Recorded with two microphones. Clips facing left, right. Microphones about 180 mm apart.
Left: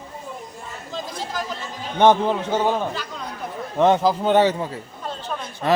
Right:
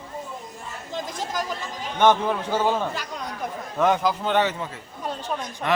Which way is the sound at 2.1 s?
25° left (ahead or behind).